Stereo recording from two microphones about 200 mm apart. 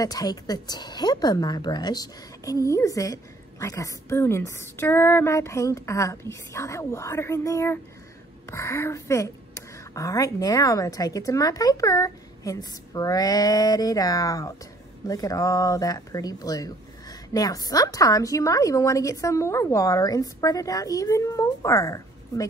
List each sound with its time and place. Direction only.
0.0 s a woman's voice: 20° left (ahead or behind)